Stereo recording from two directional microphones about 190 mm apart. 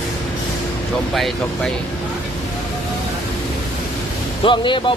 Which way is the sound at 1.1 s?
Centre (ahead or behind).